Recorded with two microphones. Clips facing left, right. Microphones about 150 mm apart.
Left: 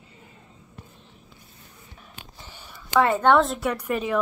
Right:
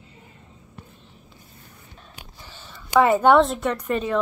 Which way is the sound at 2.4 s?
15° left (ahead or behind).